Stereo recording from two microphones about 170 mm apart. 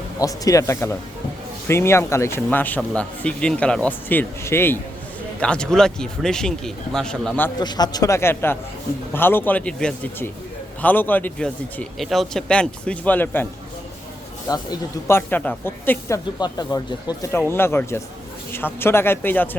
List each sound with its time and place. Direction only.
0.2 s speech: 20° left (ahead or behind)
7.6 s speech: 25° left (ahead or behind)
14.4 s speech: 20° left (ahead or behind)